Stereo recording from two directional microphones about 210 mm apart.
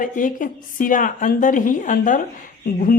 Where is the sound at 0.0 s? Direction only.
40° left (ahead or behind).